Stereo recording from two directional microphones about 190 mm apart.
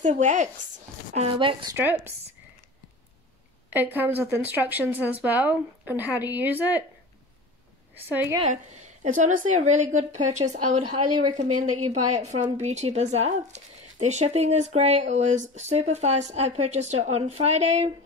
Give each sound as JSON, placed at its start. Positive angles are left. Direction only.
{"t": 0.0, "sound": "speech", "side_deg": -40}
{"t": 1.8, "sound": "a woman's voice", "side_deg": -10}
{"t": 3.7, "sound": "a woman's voice", "side_deg": -10}
{"t": 8.1, "sound": "a woman's voice", "side_deg": -10}
{"t": 8.4, "sound": "speech", "side_deg": -40}